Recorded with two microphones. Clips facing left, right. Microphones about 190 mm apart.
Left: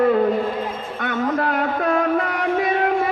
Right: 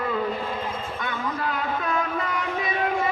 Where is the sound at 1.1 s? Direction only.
70° left (ahead or behind).